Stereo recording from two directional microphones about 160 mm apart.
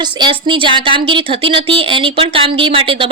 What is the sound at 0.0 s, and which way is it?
A woman's voice, 30° right (ahead or behind).